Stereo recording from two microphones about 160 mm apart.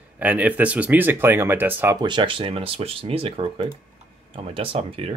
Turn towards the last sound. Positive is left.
turn(degrees=-35)  # may be behind; listen again after turning